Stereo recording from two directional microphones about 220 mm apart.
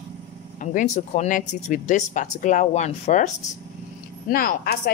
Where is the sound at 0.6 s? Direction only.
35° left (ahead or behind).